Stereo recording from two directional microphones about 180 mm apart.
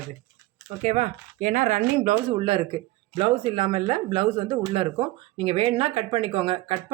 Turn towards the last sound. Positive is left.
turn(degrees=-30)  # may be behind; listen again after turning